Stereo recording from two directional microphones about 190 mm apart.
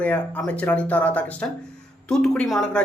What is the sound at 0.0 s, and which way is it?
Speech, 10° left (ahead or behind).